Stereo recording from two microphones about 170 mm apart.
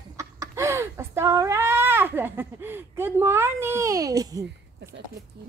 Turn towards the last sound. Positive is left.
turn(degrees=-20)  # may be behind; listen again after turning